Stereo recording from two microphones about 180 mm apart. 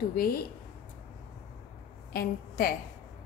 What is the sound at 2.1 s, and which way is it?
Speech, 55° left (ahead or behind).